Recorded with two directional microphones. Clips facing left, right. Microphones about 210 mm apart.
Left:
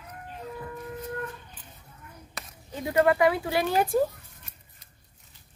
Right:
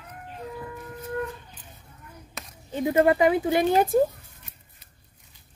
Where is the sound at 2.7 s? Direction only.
20° right (ahead or behind).